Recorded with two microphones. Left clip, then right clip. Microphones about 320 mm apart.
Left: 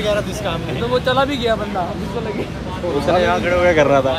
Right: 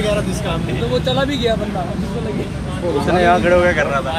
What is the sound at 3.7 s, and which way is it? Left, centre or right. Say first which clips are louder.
Speech: left 4 dB; centre.